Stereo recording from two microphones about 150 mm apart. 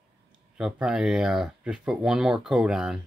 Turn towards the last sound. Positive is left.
turn(degrees=-5)  # may be behind; listen again after turning